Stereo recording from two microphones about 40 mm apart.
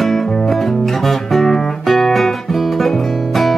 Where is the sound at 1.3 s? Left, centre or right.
Centre.